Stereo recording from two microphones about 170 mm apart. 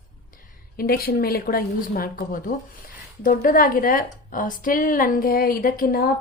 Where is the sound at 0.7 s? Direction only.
60° left (ahead or behind).